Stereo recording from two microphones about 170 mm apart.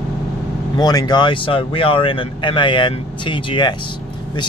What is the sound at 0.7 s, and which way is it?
Speech, 25° left (ahead or behind).